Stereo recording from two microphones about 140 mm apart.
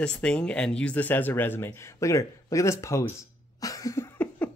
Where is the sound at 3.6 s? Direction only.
25° left (ahead or behind).